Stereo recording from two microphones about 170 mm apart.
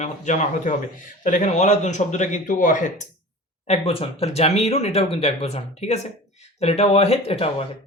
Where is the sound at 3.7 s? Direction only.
35° left (ahead or behind).